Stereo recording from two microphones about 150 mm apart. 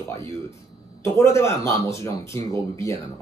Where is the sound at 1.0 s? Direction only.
15° left (ahead or behind).